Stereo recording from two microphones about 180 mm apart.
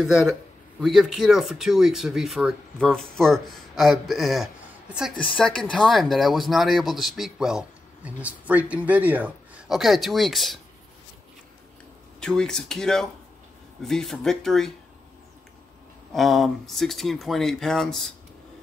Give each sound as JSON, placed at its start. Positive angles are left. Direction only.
{"t": 0.0, "sound": "speech", "side_deg": 0}
{"t": 5.1, "sound": "speech", "side_deg": 30}
{"t": 5.4, "sound": "speech", "side_deg": 5}
{"t": 12.2, "sound": "speech", "side_deg": 5}
{"t": 16.1, "sound": "speech", "side_deg": 0}